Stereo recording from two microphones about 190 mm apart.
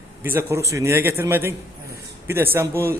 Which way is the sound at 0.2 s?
10° right (ahead or behind).